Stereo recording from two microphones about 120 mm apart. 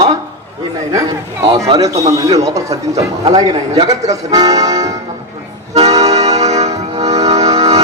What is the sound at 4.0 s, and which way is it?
Speech, 30° right (ahead or behind).